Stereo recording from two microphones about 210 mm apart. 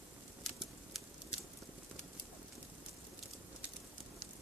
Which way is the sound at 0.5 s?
Centre (ahead or behind).